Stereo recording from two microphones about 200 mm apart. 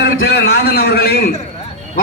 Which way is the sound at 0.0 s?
60° left (ahead or behind).